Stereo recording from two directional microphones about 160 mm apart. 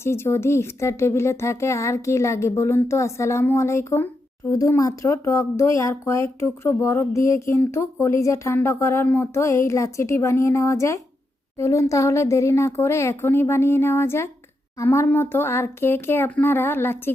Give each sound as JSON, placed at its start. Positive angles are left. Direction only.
{"t": 0.0, "sound": "speech", "side_deg": 15}